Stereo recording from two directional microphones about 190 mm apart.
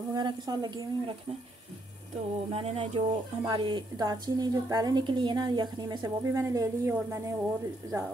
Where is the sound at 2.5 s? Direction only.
30° right (ahead or behind).